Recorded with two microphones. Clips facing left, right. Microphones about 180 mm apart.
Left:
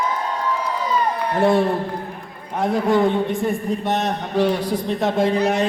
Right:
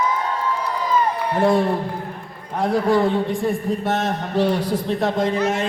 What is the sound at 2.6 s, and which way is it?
A man's voice, centre (ahead or behind).